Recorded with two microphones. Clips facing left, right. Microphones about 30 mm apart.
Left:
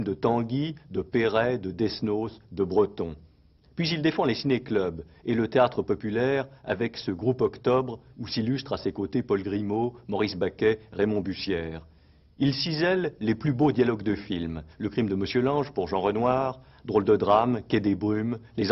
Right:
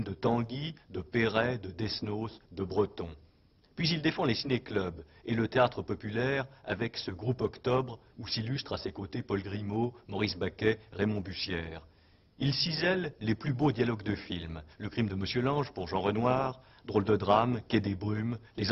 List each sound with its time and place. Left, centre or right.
0.0 s speech: centre
12.5 s speech: centre
12.8 s speech: centre